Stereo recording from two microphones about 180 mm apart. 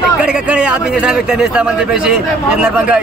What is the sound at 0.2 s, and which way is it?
A man's voice, 5° right (ahead or behind).